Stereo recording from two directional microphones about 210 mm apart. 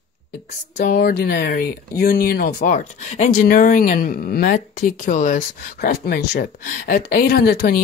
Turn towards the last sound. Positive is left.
turn(degrees=45)  # may be behind; listen again after turning